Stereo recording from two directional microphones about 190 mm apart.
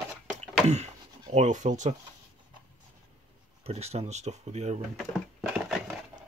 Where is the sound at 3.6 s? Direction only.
35° right (ahead or behind).